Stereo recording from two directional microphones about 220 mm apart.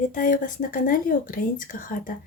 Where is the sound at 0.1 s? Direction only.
35° left (ahead or behind).